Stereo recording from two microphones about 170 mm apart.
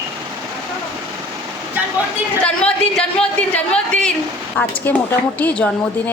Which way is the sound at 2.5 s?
5° left (ahead or behind).